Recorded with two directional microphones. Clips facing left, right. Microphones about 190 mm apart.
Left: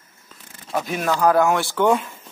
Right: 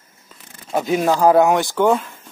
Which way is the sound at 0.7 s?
25° right (ahead or behind).